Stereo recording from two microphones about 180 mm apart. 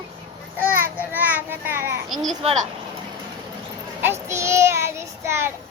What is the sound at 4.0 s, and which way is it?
Child singing, 15° right (ahead or behind).